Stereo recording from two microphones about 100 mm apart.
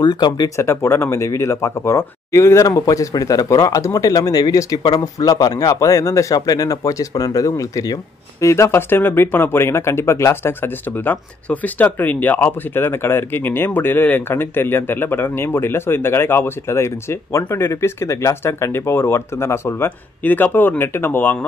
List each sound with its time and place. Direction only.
0.0 s speech: 45° left (ahead or behind)
0.6 s speech: 25° left (ahead or behind)